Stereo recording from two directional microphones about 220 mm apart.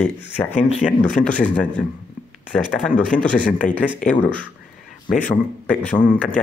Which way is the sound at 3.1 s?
35° left (ahead or behind).